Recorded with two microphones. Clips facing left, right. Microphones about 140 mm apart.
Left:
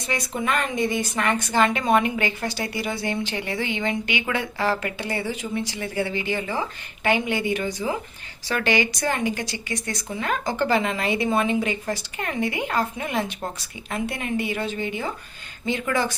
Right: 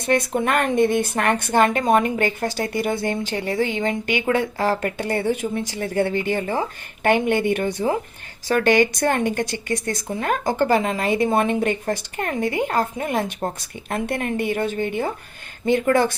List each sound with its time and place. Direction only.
0.1 s speech: 60° right (ahead or behind)